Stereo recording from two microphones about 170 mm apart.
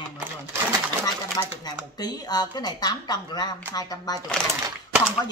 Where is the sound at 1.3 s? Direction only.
25° left (ahead or behind).